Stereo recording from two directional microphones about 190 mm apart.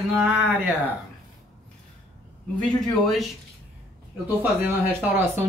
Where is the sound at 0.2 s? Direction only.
10° right (ahead or behind).